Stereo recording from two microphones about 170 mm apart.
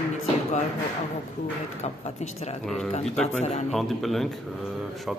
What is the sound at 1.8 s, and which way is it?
A woman's voice, 40° left (ahead or behind).